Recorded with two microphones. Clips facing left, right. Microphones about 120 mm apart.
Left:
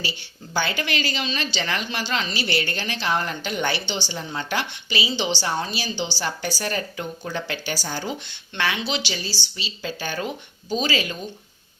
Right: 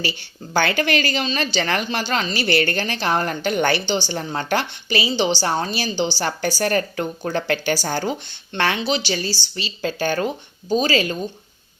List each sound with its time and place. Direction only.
0.0 s a woman's voice: 60° right (ahead or behind)
8.3 s speech: 45° right (ahead or behind)